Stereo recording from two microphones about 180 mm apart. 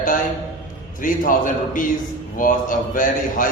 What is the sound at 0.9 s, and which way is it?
Speech, 50° left (ahead or behind).